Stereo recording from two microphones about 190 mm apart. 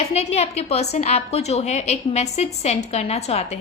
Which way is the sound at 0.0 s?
35° left (ahead or behind).